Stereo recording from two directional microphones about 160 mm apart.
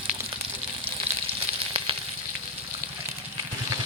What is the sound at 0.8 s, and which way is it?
Frying, 35° right (ahead or behind).